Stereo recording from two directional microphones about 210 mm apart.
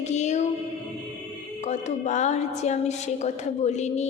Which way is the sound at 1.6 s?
35° left (ahead or behind).